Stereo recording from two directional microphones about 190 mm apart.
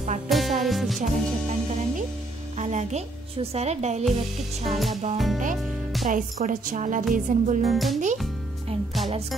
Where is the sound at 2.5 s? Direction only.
35° right (ahead or behind).